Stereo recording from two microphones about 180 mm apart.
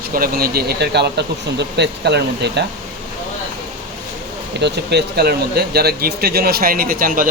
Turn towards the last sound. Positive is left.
turn(degrees=-50)  # may be behind; listen again after turning